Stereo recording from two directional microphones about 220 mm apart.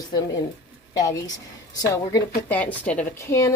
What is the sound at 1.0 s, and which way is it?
Speech, 15° left (ahead or behind).